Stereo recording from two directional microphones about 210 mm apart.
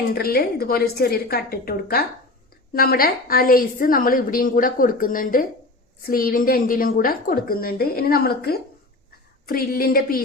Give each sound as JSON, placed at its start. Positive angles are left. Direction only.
{"t": 0.1, "sound": "a woman's voice", "side_deg": 45}